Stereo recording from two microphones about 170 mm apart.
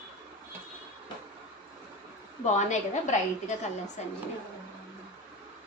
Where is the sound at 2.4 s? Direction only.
45° left (ahead or behind).